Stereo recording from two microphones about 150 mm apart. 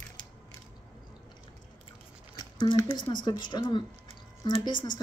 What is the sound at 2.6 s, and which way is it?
Speech, 25° left (ahead or behind).